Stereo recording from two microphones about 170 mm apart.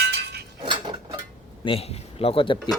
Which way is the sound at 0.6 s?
30° right (ahead or behind).